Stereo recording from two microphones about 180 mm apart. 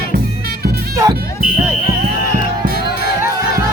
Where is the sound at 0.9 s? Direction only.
20° right (ahead or behind).